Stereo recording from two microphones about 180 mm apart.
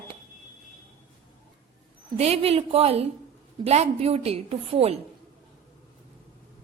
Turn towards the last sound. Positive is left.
turn(degrees=-35)  # may be behind; listen again after turning